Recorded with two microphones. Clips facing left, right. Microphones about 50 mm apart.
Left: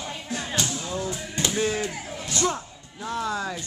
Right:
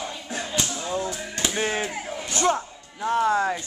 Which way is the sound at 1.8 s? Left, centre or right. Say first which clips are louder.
Right 2 dB; centre.